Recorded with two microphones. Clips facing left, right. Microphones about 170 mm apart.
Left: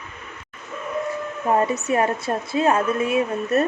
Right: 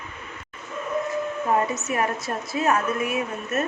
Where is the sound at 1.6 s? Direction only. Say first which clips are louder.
Left 5 dB; 30° left (ahead or behind).